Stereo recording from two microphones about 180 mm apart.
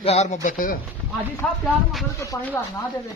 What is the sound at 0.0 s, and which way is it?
Speech, 35° left (ahead or behind).